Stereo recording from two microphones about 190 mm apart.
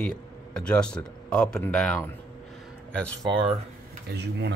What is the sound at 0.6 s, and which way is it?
Speech, 5° left (ahead or behind).